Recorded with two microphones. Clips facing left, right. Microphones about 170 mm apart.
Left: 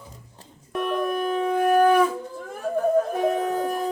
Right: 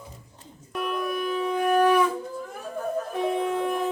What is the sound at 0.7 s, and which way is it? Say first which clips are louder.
Shofar: left 3 dB; 45° left (ahead or behind).